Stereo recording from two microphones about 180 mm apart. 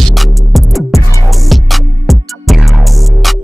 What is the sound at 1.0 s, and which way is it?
Music, 15° left (ahead or behind).